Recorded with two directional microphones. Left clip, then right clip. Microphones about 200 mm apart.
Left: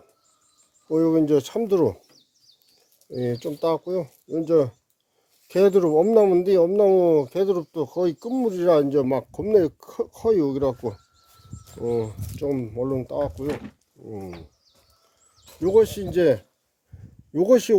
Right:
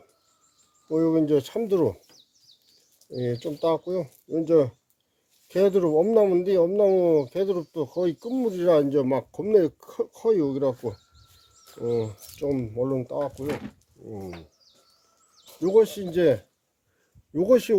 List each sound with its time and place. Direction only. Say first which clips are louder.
0.9 s speech: left 2 dB; 30° left (ahead or behind)
3.1 s speech: left 2 dB; 25° left (ahead or behind)
5.5 s speech: left 3 dB; 30° left (ahead or behind)
13.3 s speech: left 2 dB; centre (ahead or behind)
15.6 s speech: left 2 dB; 25° left (ahead or behind)